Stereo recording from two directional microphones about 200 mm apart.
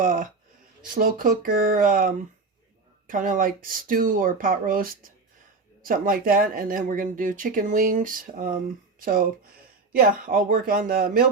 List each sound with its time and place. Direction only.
0.0 s speech: 40° right (ahead or behind)